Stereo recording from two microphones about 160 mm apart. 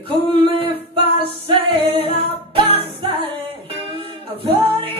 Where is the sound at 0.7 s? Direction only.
35° right (ahead or behind).